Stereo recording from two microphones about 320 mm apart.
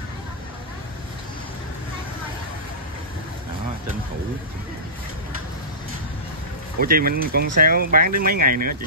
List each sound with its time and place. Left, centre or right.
6.8 s speech: right